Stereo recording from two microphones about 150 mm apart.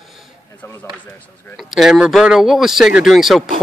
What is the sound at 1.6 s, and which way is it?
Speech, centre (ahead or behind).